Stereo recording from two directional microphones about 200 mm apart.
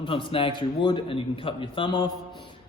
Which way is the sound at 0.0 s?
25° left (ahead or behind).